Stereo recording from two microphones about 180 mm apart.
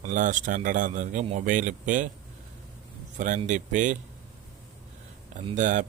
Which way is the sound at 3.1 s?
45° right (ahead or behind).